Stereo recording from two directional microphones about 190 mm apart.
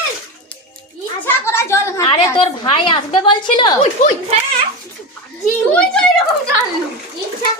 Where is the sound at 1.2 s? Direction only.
10° left (ahead or behind).